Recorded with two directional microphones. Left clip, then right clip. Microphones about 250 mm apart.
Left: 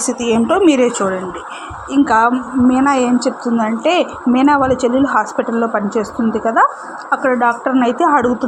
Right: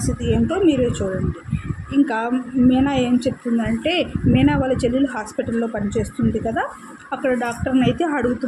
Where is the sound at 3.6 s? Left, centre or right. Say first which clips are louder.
Left 7 dB; centre.